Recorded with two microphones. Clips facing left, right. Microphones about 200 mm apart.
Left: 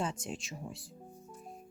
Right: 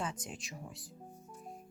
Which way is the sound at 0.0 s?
30° left (ahead or behind).